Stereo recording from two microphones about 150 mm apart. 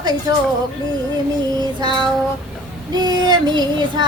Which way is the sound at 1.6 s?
30° right (ahead or behind).